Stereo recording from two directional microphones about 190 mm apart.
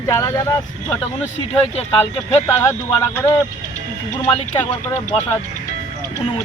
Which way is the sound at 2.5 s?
15° left (ahead or behind).